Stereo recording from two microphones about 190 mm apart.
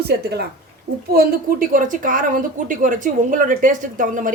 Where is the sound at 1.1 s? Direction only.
45° right (ahead or behind).